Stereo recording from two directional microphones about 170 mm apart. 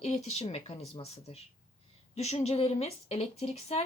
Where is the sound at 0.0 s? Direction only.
40° left (ahead or behind).